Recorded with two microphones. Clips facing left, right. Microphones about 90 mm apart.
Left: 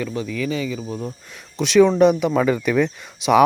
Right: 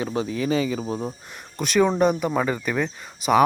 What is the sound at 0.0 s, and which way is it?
Speech, 30° right (ahead or behind).